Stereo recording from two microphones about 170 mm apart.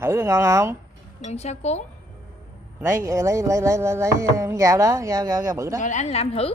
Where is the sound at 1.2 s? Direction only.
40° left (ahead or behind).